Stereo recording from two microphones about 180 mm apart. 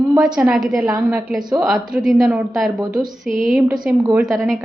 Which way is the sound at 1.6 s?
5° right (ahead or behind).